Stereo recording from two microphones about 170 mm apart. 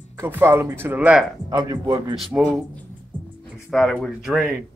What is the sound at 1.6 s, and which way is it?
Speech, 25° right (ahead or behind).